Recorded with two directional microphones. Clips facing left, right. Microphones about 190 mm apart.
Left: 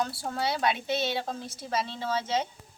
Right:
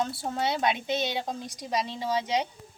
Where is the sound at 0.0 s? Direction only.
20° right (ahead or behind).